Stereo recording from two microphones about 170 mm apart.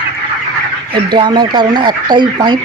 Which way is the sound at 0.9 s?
25° right (ahead or behind).